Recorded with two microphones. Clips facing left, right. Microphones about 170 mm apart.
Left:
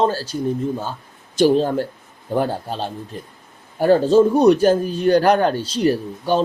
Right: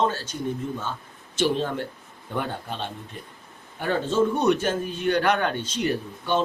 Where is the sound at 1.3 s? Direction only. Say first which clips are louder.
Left 9 dB; 40° left (ahead or behind).